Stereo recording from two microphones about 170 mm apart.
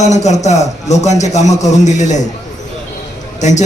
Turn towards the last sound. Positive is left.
turn(degrees=45)  # may be behind; listen again after turning